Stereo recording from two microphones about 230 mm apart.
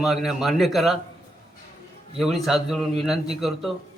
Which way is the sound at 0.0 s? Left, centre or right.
Centre.